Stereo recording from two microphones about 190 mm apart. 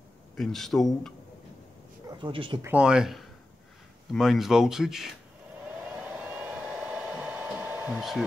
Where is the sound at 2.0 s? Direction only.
25° right (ahead or behind).